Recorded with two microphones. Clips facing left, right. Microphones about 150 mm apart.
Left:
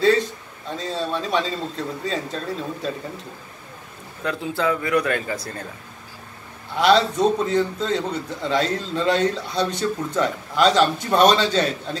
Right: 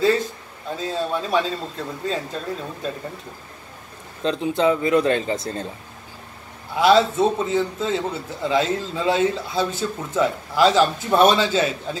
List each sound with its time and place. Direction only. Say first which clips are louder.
0.7 s a man's voice: right 1 dB; centre (ahead or behind)
4.2 s speech: right 4 dB; 20° right (ahead or behind)
6.7 s a man's voice: right 1 dB; 5° right (ahead or behind)